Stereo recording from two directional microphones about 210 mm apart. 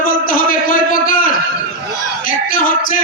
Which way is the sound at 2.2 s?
40° left (ahead or behind).